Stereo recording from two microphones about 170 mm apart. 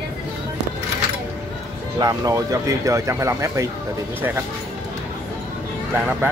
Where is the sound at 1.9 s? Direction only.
20° right (ahead or behind).